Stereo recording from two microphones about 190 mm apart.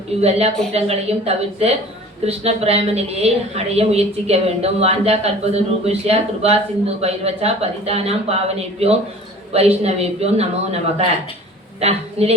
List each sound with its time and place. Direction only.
0.2 s a woman's voice: 35° right (ahead or behind)